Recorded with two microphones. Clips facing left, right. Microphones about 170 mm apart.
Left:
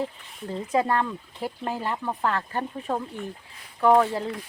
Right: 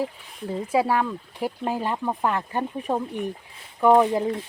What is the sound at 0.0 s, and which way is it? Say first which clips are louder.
Speech: right 2 dB; 10° right (ahead or behind).